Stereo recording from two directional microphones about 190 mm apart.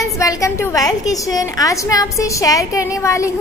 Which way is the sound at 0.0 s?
15° left (ahead or behind).